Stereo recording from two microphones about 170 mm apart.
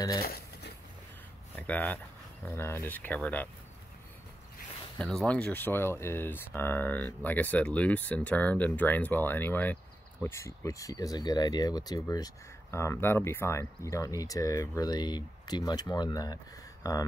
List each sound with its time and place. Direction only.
0.2 s a sound: 65° left (ahead or behind)
1.6 s speech: 10° left (ahead or behind)
4.9 s speech: 5° left (ahead or behind); by 17.0 s 20° left (ahead or behind)